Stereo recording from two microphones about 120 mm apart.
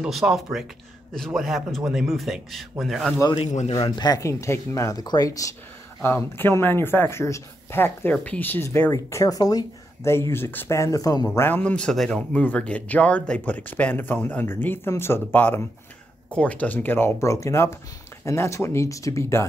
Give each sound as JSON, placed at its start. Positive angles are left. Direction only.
{"t": 0.0, "sound": "speech", "side_deg": -5}
{"t": 3.4, "sound": "speech", "side_deg": 70}
{"t": 3.9, "sound": "speech", "side_deg": 35}
{"t": 6.0, "sound": "speech", "side_deg": 20}
{"t": 10.1, "sound": "speech", "side_deg": 20}
{"t": 11.3, "sound": "speech", "side_deg": 15}